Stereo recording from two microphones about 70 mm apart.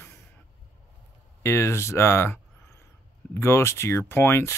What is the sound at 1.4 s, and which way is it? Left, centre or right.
Speech, left.